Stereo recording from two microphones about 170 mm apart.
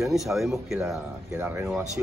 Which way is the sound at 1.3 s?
15° right (ahead or behind).